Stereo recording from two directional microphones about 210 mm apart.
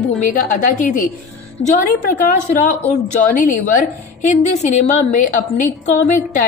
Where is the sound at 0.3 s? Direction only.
40° left (ahead or behind).